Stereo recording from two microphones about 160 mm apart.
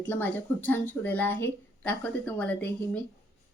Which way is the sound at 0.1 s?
10° left (ahead or behind).